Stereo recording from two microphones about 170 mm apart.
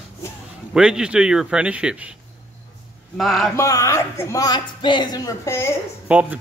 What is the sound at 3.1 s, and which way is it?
Speech, centre (ahead or behind).